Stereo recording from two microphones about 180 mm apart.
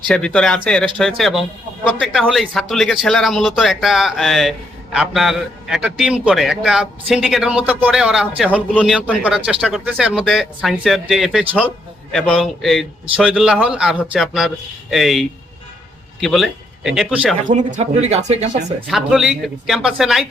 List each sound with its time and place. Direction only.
0.1 s a man's voice: 5° left (ahead or behind)
17.5 s speech: 40° right (ahead or behind)
18.9 s a man's voice: 5° right (ahead or behind)